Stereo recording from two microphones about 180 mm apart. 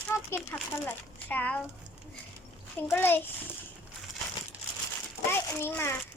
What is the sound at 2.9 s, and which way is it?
Speech, 10° left (ahead or behind).